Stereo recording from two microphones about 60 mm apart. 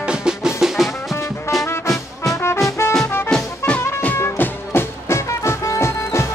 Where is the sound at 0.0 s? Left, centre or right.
Centre.